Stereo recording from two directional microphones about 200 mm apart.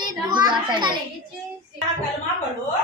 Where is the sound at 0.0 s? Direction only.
20° right (ahead or behind).